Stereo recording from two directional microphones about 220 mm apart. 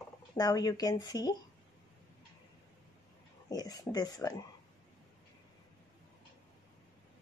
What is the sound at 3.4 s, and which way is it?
Speech, 15° left (ahead or behind).